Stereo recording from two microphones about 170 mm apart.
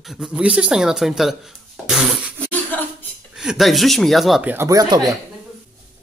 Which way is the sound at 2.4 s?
10° left (ahead or behind).